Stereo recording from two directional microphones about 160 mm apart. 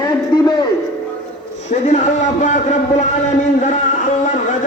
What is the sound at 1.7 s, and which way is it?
A man's voice, 50° left (ahead or behind).